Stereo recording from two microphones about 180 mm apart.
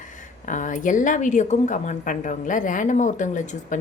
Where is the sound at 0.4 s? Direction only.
45° left (ahead or behind).